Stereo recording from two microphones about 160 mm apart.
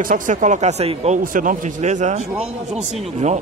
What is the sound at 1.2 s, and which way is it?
Speech, 60° right (ahead or behind).